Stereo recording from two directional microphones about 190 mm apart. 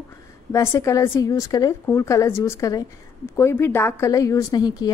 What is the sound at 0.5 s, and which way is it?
A woman's voice, 15° left (ahead or behind).